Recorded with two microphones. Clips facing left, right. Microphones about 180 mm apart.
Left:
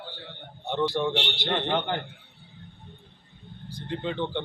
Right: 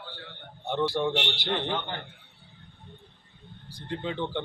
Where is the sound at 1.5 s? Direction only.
60° left (ahead or behind).